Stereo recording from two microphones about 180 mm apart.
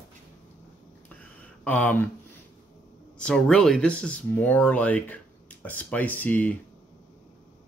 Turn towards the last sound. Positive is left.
turn(degrees=10)  # may be behind; listen again after turning